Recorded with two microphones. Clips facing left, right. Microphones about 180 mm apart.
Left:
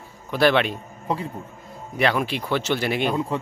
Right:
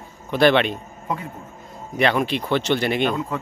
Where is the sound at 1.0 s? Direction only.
30° left (ahead or behind).